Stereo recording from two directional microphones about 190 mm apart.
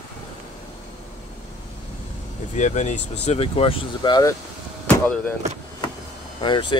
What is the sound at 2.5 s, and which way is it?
Speech, 40° left (ahead or behind).